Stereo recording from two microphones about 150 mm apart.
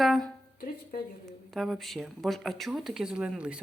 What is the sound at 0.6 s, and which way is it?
Speech, 85° left.